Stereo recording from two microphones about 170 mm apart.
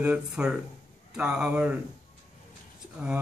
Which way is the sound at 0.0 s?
5° right (ahead or behind).